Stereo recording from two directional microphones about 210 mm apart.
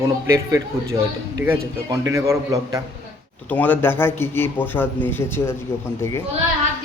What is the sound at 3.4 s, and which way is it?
Speech, 10° left (ahead or behind).